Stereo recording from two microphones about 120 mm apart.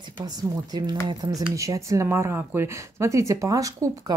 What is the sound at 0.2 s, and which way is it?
Speech, 35° right (ahead or behind).